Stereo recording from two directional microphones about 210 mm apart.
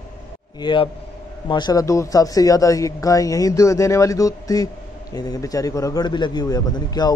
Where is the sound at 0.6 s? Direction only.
20° left (ahead or behind).